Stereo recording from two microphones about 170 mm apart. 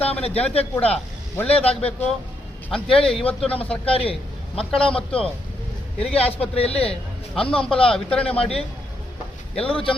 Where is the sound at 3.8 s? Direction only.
35° left (ahead or behind).